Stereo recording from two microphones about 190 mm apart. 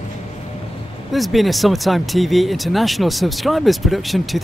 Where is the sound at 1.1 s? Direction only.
Centre (ahead or behind).